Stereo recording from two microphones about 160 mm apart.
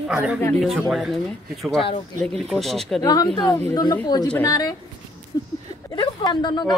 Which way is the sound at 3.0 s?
25° left (ahead or behind).